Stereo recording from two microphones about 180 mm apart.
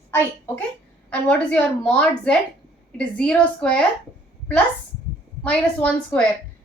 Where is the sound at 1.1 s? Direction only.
5° left (ahead or behind).